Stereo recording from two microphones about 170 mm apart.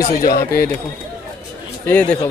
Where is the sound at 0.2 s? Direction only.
55° left (ahead or behind).